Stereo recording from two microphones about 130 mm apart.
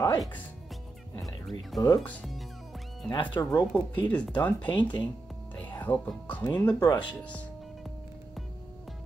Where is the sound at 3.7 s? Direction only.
10° left (ahead or behind).